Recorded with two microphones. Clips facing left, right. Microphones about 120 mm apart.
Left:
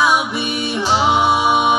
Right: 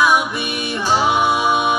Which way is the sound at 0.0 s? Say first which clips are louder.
Even; 15° left (ahead or behind).